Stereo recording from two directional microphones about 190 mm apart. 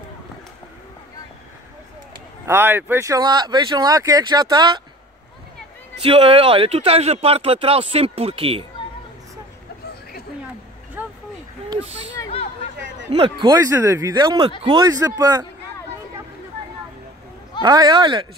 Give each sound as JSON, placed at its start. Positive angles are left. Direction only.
{"t": 2.4, "sound": "speech", "side_deg": -10}
{"t": 6.0, "sound": "speech", "side_deg": -30}
{"t": 11.0, "sound": "vehicle", "side_deg": -10}
{"t": 13.1, "sound": "speech", "side_deg": -25}
{"t": 17.6, "sound": "speech", "side_deg": -20}